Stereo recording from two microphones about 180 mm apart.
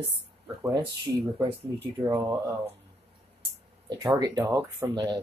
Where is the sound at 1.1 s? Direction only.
15° right (ahead or behind).